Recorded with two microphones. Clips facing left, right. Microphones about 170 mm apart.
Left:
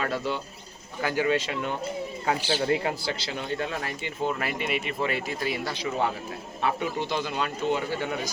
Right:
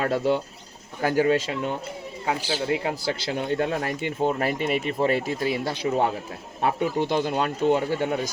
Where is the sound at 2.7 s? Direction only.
15° right (ahead or behind).